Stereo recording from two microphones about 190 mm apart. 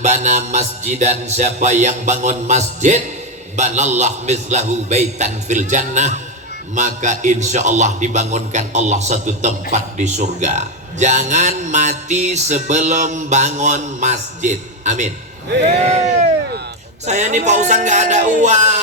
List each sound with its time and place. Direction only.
0.0 s mantra: 40° right (ahead or behind)
17.1 s mantra: 35° right (ahead or behind)